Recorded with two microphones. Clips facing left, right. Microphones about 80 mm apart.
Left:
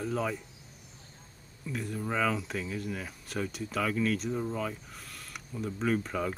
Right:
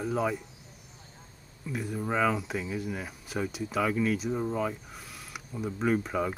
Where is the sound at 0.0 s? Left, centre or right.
Centre.